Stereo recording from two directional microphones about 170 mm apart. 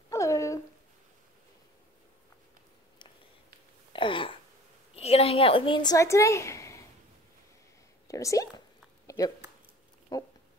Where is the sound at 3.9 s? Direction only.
30° left (ahead or behind).